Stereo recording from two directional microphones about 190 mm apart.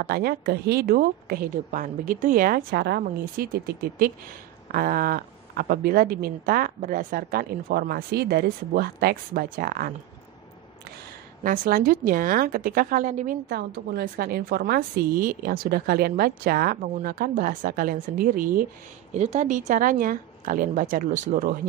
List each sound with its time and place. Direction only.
0.0 s speech: 55° right (ahead or behind)
11.4 s speech: 45° right (ahead or behind)
13.5 s speech: 55° right (ahead or behind)
19.1 s speech: 35° right (ahead or behind)